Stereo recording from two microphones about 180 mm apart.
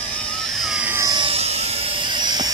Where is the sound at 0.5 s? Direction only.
5° right (ahead or behind).